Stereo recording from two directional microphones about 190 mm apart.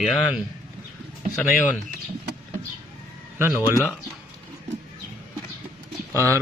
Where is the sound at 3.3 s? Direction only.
10° right (ahead or behind).